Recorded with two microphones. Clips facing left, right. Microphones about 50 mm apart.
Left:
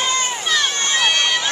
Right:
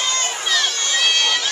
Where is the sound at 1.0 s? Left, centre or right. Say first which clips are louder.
Even; left.